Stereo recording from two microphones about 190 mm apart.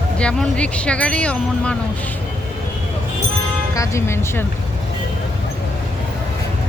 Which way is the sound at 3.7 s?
15° left (ahead or behind).